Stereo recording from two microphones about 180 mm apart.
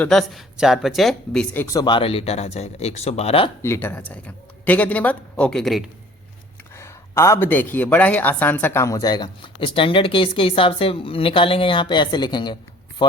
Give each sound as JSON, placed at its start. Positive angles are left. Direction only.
{"t": 0.0, "sound": "speech", "side_deg": 5}
{"t": 1.6, "sound": "speech", "side_deg": 20}
{"t": 3.6, "sound": "speech", "side_deg": 15}
{"t": 6.7, "sound": "speech", "side_deg": 15}